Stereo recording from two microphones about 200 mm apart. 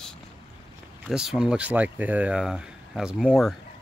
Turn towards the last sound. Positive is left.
turn(degrees=0)  # may be behind; listen again after turning